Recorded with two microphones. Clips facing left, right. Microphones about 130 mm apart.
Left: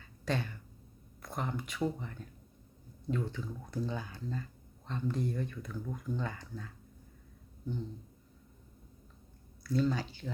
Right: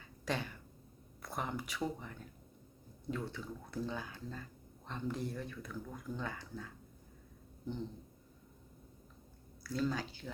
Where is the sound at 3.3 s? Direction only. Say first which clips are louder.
Left 3 dB; 15° left (ahead or behind).